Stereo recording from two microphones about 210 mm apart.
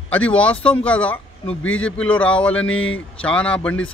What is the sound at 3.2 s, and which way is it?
Speech, 5° left (ahead or behind).